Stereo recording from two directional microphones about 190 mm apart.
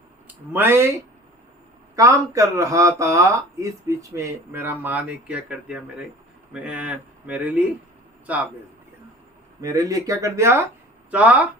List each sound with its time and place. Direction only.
0.5 s speech: 10° right (ahead or behind)
2.0 s speech: 15° right (ahead or behind)
9.6 s speech: 20° right (ahead or behind)